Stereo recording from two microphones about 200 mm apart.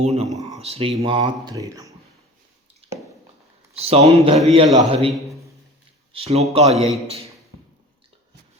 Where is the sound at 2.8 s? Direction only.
30° right (ahead or behind).